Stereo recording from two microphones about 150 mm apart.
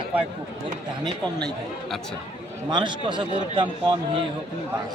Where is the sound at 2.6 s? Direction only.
30° right (ahead or behind).